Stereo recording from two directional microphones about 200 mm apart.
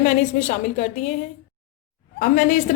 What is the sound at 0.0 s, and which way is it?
A woman's voice, 35° left (ahead or behind).